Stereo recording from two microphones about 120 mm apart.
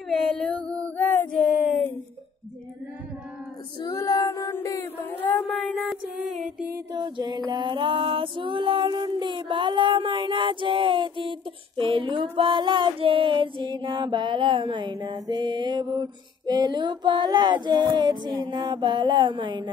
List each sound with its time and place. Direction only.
0.1 s female singing: 5° left (ahead or behind)
3.8 s female singing: 30° left (ahead or behind)
4.3 s chant: 30° left (ahead or behind)
5.5 s music: centre (ahead or behind)
6.9 s female singing: 40° right (ahead or behind)